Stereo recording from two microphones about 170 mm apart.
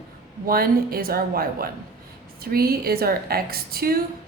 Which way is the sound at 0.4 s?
60° right (ahead or behind).